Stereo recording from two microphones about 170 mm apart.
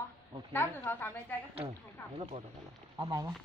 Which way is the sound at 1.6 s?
35° right (ahead or behind).